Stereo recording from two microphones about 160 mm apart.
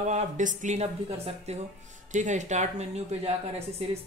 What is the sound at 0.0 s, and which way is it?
Speech, 45° right (ahead or behind).